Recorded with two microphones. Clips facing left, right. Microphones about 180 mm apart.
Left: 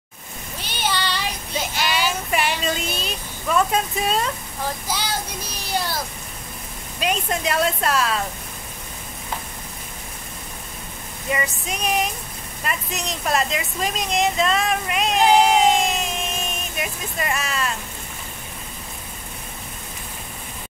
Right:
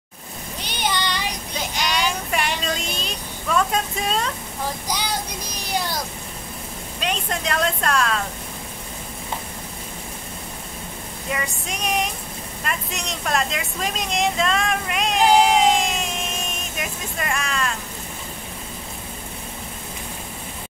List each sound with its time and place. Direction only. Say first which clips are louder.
0.7 s child singing: even; 15° right (ahead or behind)
1.8 s child singing: even; 5° left (ahead or behind)
4.9 s child singing: right 1 dB; 15° right (ahead or behind)
7.0 s a woman's voice: left 3 dB; 10° left (ahead or behind)
11.3 s a sound: left 3 dB; centre (ahead or behind)
12.6 s speech: left 2 dB; 5° left (ahead or behind)
17.2 s vehicle: even; 5° left (ahead or behind)